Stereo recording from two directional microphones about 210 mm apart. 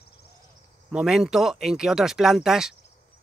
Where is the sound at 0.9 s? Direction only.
5° right (ahead or behind).